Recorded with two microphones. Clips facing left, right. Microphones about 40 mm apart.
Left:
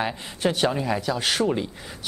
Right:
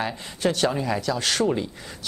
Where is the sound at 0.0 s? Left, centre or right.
Centre.